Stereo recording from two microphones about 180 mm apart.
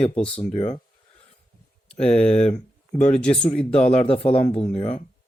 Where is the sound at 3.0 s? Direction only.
40° left (ahead or behind).